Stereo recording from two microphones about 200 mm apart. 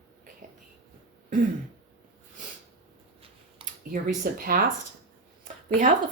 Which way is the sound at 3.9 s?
45° right (ahead or behind).